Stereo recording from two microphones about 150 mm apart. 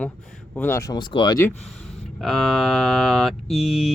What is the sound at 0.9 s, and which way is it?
Speech, 30° left (ahead or behind).